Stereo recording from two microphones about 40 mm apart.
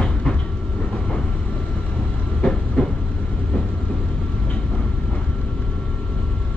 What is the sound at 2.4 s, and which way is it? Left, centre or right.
Train, centre.